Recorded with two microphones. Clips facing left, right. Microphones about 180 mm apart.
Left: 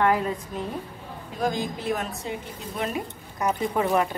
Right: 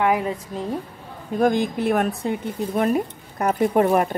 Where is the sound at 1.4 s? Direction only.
60° right (ahead or behind).